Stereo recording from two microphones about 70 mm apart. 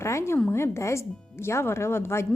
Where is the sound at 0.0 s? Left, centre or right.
Left.